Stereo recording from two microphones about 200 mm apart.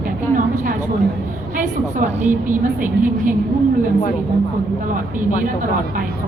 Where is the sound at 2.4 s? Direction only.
40° right (ahead or behind).